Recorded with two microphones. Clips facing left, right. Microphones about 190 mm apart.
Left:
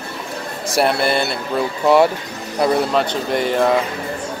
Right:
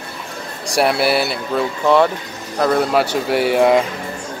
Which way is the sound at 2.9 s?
5° right (ahead or behind).